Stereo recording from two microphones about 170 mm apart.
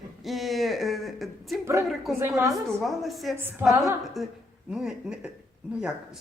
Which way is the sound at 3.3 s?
15° right (ahead or behind).